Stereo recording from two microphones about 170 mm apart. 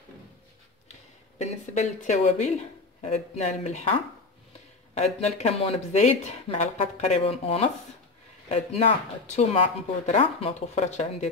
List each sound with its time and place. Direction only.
1.4 s speech: 45° left (ahead or behind)
4.9 s speech: 40° left (ahead or behind)